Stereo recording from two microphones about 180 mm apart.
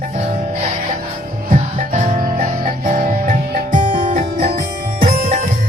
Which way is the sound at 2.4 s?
45° right (ahead or behind).